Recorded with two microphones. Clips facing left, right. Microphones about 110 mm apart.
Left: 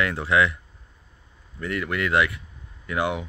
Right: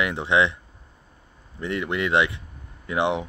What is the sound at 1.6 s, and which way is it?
Speech, 25° right (ahead or behind).